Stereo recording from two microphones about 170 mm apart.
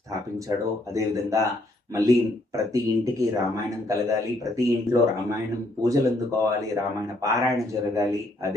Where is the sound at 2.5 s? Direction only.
20° right (ahead or behind).